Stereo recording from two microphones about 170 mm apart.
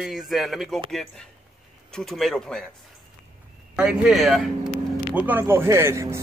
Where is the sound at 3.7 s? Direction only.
5° right (ahead or behind).